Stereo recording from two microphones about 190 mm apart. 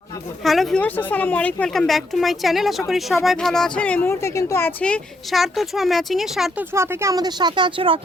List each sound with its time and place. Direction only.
0.4 s speech: centre (ahead or behind)
6.7 s a woman's voice: 15° right (ahead or behind)